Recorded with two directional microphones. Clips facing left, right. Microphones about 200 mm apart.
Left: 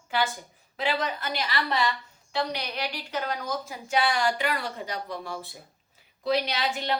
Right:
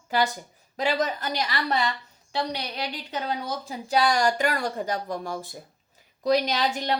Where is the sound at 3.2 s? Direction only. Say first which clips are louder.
Right 1 dB; 35° right (ahead or behind).